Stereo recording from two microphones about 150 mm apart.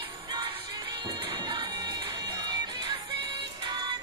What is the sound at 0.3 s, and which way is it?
Music, 25° right (ahead or behind).